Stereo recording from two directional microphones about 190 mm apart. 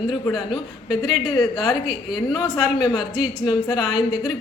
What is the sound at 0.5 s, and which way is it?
A woman's voice, 20° left (ahead or behind).